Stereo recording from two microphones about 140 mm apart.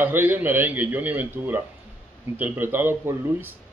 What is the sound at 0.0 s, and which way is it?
Speech, 15° right (ahead or behind).